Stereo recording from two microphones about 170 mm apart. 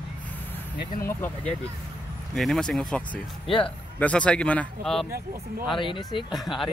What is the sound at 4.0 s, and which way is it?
Speech, 5° left (ahead or behind).